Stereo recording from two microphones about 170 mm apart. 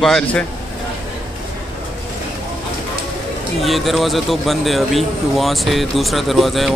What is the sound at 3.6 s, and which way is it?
Speech, centre (ahead or behind).